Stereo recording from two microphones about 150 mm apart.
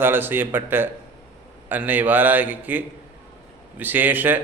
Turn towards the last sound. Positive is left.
turn(degrees=-10)  # may be behind; listen again after turning